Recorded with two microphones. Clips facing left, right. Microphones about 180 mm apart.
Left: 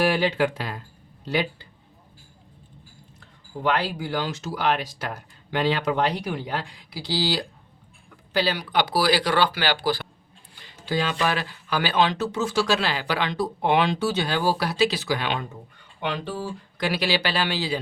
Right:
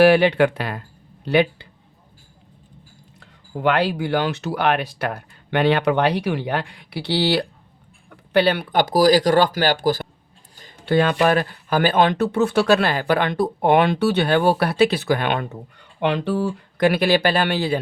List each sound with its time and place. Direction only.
0.0 s speech: 70° right (ahead or behind)
3.6 s speech: 65° right (ahead or behind); by 10.1 s 45° right (ahead or behind)
10.6 s speech: 55° right (ahead or behind)
16.0 s speech: 65° right (ahead or behind)